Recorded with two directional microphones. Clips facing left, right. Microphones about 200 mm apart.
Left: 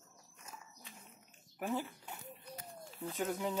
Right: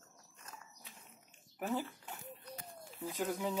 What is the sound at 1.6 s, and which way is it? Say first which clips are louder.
Speech: even; centre (ahead or behind).